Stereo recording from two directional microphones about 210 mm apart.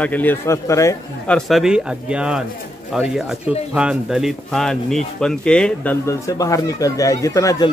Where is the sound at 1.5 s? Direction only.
5° right (ahead or behind).